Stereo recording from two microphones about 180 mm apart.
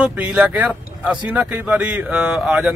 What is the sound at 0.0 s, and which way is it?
Speech, 5° right (ahead or behind).